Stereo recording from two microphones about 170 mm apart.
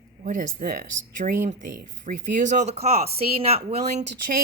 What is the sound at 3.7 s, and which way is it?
Speech, 60° right (ahead or behind).